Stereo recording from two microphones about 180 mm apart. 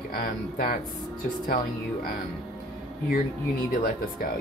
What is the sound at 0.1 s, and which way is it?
Speech, 55° left (ahead or behind).